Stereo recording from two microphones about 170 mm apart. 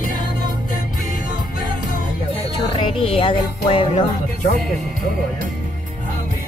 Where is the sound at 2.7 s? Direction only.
30° left (ahead or behind).